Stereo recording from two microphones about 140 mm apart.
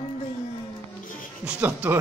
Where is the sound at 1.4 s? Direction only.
10° right (ahead or behind).